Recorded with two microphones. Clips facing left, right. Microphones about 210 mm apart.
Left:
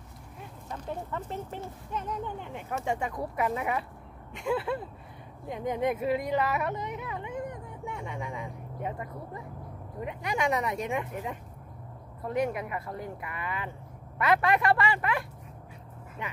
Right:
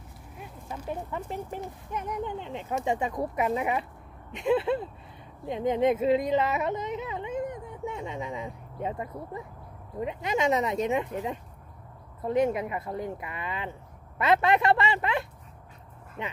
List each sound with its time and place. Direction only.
0.7 s speech: 10° right (ahead or behind)